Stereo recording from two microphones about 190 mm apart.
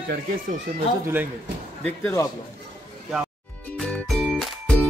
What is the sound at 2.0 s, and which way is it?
Speech, 15° left (ahead or behind).